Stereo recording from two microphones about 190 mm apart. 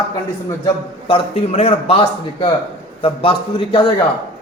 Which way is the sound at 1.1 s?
30° left (ahead or behind).